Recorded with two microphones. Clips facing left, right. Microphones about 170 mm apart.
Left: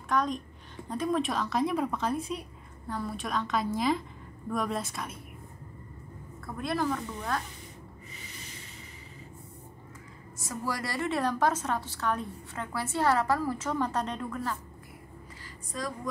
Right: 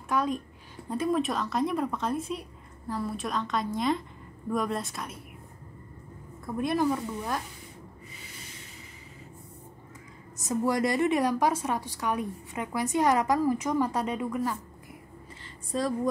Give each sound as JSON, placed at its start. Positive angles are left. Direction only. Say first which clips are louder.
{"t": 0.1, "sound": "a woman's voice", "louder": "right 1 dB", "side_deg": -5}
{"t": 6.4, "sound": "a woman's voice", "louder": "right 4 dB", "side_deg": -15}
{"t": 10.4, "sound": "a woman's voice", "louder": "right 8 dB", "side_deg": -20}
{"t": 15.7, "sound": "a woman's voice", "louder": "right 7 dB", "side_deg": -30}